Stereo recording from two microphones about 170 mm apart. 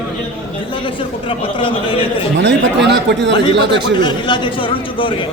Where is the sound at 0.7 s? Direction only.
30° left (ahead or behind).